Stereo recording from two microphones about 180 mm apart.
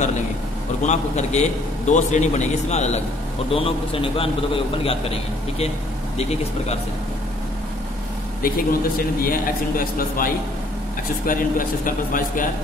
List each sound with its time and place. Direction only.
0.8 s a man's voice: 40° left (ahead or behind)
8.4 s a man's voice: 55° left (ahead or behind)